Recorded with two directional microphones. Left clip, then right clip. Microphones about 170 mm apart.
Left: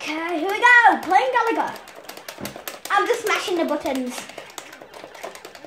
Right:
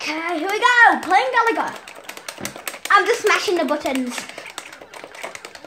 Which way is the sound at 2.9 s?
45° right (ahead or behind).